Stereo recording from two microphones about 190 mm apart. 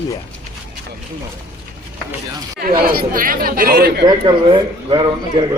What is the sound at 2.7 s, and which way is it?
Speech, 50° right (ahead or behind).